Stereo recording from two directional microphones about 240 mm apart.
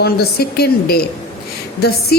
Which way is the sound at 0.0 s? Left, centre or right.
Left.